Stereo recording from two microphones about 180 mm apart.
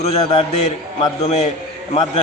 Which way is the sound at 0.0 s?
35° left (ahead or behind).